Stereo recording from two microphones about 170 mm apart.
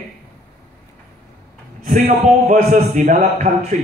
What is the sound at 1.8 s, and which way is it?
A man's voice, 55° right (ahead or behind).